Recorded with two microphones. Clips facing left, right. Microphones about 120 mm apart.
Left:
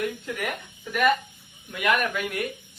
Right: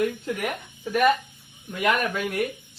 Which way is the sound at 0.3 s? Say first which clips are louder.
Right 2 dB; 30° right (ahead or behind).